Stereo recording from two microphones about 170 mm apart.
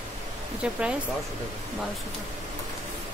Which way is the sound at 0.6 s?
5° right (ahead or behind).